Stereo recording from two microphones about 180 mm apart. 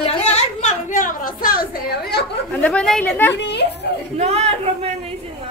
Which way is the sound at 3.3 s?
70° left (ahead or behind).